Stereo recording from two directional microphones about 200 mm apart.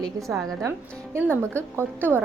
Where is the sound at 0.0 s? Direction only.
15° right (ahead or behind).